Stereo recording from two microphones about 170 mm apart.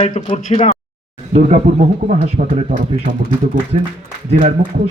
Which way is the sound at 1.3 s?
40° right (ahead or behind).